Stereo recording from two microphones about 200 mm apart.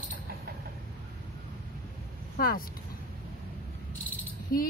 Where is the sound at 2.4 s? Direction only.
45° left (ahead or behind).